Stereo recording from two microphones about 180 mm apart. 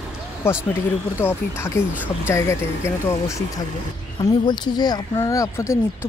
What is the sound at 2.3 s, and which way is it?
Speech, 15° left (ahead or behind).